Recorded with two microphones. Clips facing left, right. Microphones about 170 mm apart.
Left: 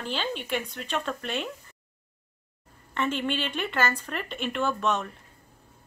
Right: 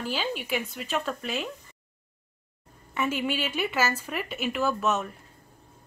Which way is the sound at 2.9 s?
10° right (ahead or behind).